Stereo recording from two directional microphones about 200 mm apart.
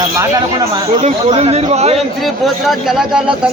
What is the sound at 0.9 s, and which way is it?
Speech, 30° right (ahead or behind).